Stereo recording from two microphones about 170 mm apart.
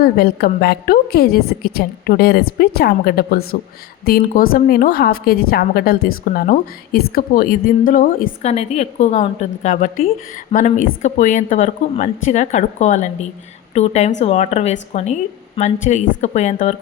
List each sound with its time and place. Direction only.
0.0 s a woman's voice: 65° left (ahead or behind)
8.4 s a woman's voice: 40° left (ahead or behind)